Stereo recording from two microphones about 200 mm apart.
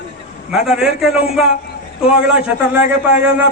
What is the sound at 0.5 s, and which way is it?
Speech, 5° right (ahead or behind).